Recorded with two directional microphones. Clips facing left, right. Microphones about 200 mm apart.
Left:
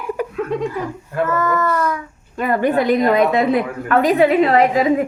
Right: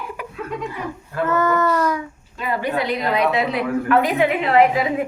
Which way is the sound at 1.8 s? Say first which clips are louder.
Even; 25° right (ahead or behind).